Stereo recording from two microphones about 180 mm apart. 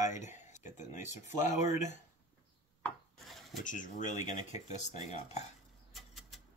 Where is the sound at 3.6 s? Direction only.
45° left (ahead or behind).